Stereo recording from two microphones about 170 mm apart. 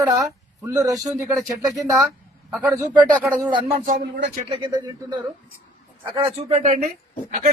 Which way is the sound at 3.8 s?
55° right (ahead or behind).